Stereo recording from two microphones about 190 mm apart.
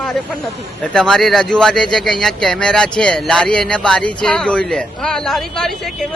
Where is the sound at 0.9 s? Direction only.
5° left (ahead or behind).